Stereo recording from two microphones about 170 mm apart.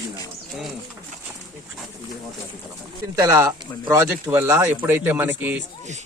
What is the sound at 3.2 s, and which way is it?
A man's voice, 20° right (ahead or behind).